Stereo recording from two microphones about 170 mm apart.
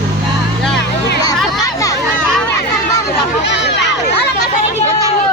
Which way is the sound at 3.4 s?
90° left.